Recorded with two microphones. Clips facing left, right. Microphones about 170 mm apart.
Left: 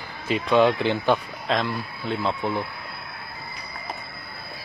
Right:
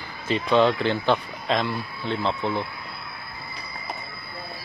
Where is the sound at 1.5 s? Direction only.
Centre (ahead or behind).